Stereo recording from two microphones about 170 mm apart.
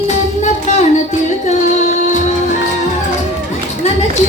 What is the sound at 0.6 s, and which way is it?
Music, 40° left (ahead or behind).